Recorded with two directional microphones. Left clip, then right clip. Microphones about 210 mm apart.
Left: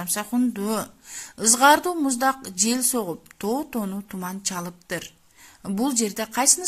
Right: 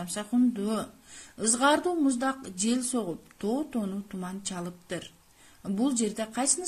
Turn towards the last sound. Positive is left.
turn(degrees=35)  # may be behind; listen again after turning